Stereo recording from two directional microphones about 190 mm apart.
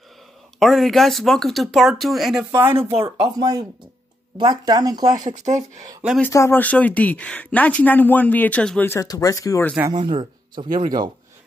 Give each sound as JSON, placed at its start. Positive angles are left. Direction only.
{"t": 0.6, "sound": "speech", "side_deg": 0}
{"t": 6.2, "sound": "speech", "side_deg": 15}
{"t": 9.8, "sound": "speech", "side_deg": -25}